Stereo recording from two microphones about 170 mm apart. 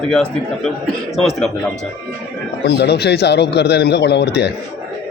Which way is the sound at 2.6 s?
75° left (ahead or behind).